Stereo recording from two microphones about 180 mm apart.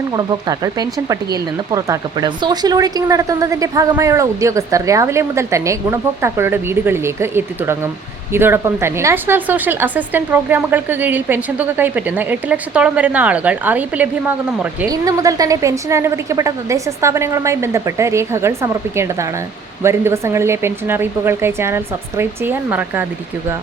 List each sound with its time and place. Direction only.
0.1 s speech: 20° right (ahead or behind)
14.8 s speech: 20° right (ahead or behind)